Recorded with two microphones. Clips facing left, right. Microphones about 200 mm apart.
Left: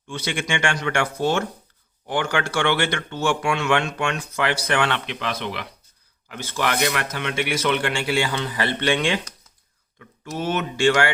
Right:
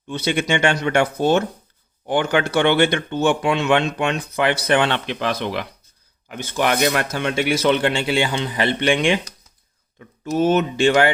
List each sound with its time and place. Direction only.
0.1 s a man's voice: 20° right (ahead or behind)
5.0 s speech: 35° right (ahead or behind)
6.2 s a man's voice: 20° right (ahead or behind)